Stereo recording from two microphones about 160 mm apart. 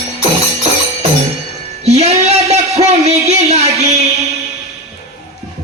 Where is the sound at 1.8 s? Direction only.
40° right (ahead or behind).